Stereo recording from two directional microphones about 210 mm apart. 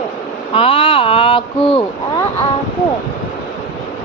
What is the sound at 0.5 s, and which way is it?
Speech, 25° left (ahead or behind).